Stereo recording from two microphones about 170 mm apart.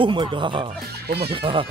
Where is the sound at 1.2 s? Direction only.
30° right (ahead or behind).